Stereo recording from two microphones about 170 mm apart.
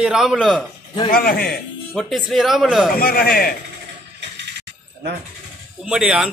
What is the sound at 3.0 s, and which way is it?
Speech, 60° left (ahead or behind).